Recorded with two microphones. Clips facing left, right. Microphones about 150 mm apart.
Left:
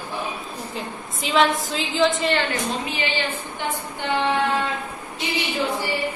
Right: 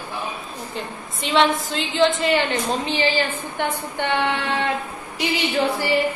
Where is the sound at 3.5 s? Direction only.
60° right (ahead or behind).